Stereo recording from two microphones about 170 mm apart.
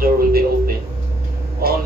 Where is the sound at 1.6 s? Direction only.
65° right (ahead or behind).